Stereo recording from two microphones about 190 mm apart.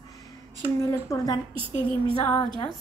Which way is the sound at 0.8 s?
15° left (ahead or behind).